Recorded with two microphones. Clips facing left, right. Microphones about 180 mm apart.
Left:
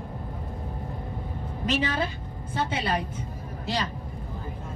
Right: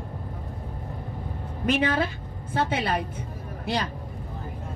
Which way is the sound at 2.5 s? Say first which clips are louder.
Right 3 dB; 60° right (ahead or behind).